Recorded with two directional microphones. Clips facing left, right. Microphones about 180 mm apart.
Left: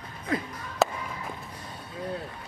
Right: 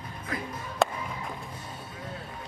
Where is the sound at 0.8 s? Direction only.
5° left (ahead or behind).